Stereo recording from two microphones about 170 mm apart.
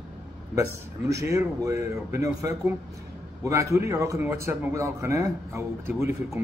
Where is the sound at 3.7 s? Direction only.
15° right (ahead or behind).